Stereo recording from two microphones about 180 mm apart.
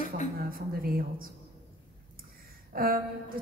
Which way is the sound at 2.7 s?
55° right (ahead or behind).